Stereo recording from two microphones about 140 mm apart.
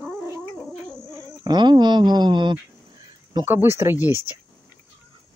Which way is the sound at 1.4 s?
30° right (ahead or behind).